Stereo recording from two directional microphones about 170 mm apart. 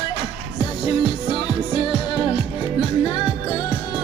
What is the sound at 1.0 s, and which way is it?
Music, 30° left (ahead or behind).